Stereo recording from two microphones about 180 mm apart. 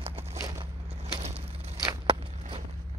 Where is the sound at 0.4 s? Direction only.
15° right (ahead or behind).